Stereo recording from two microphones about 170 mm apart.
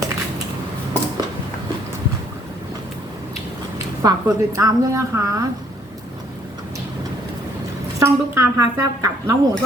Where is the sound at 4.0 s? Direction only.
20° right (ahead or behind).